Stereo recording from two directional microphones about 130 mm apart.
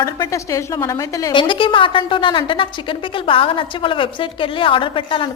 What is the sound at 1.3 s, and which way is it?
A woman's voice, 40° left (ahead or behind).